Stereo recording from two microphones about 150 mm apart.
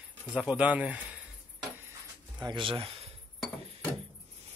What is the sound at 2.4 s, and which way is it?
Speech, 35° right (ahead or behind).